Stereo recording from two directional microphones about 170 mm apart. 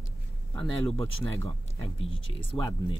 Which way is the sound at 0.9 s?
15° left (ahead or behind).